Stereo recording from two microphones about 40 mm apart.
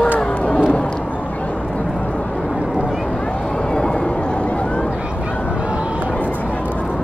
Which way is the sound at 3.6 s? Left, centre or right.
Centre.